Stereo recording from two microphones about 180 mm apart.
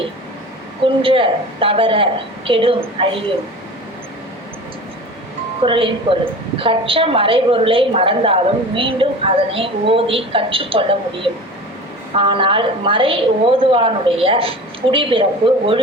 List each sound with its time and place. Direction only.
1.0 s a woman's voice: 30° right (ahead or behind)
5.6 s a woman's voice: 30° right (ahead or behind)